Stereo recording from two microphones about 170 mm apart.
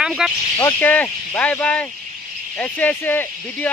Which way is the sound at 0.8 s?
10° left (ahead or behind).